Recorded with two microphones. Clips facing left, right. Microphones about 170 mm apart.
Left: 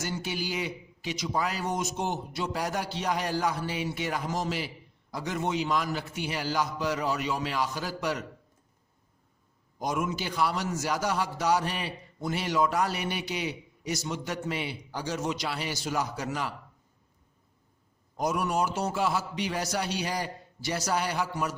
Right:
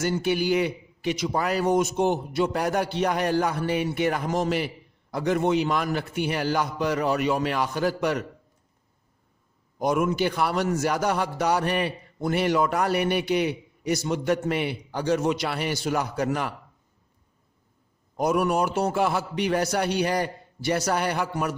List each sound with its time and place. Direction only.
0.0 s a man's voice: 55° right (ahead or behind)
9.7 s a man's voice: 60° right (ahead or behind)
18.2 s a man's voice: 60° right (ahead or behind)